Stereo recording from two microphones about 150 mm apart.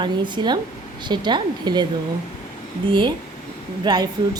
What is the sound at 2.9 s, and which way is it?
A woman's voice, 35° right (ahead or behind).